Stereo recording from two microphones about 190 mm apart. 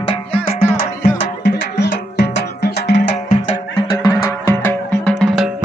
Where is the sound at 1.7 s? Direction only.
65° left (ahead or behind).